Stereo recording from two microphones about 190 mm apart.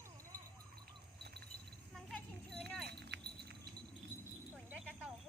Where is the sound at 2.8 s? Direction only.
60° right (ahead or behind).